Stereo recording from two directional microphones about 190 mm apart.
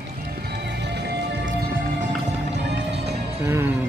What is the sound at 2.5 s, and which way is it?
Music, 65° right (ahead or behind).